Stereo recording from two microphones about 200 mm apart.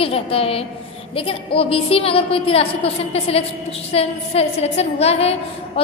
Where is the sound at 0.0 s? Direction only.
30° left (ahead or behind).